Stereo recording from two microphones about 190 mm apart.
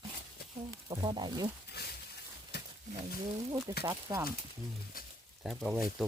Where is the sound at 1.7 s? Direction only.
55° left (ahead or behind).